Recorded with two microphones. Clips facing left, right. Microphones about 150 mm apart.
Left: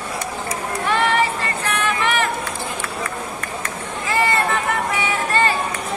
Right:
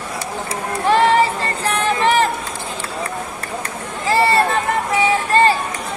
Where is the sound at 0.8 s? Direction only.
35° right (ahead or behind).